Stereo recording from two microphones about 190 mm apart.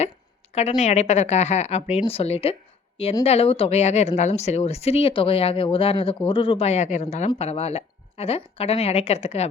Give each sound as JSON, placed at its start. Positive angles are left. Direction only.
{"t": 0.8, "sound": "speech", "side_deg": 35}